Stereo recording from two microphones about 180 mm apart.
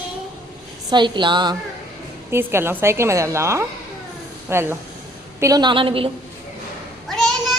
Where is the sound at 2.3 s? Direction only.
15° right (ahead or behind); by 6.1 s 30° right (ahead or behind).